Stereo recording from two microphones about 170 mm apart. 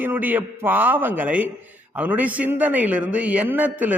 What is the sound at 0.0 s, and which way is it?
A man's voice, 10° right (ahead or behind).